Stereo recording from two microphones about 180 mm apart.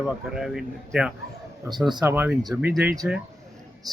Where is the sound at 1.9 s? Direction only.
20° right (ahead or behind).